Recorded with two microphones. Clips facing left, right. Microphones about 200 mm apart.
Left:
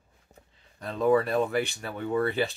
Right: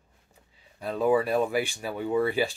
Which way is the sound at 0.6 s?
10° right (ahead or behind).